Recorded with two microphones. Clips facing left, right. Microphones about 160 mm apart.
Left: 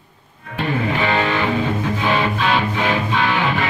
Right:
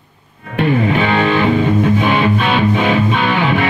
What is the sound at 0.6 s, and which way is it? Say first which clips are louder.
Music: right 6 dB; 60° right (ahead or behind).